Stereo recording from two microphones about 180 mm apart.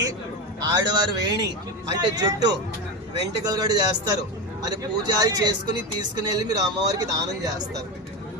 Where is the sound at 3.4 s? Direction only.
20° right (ahead or behind).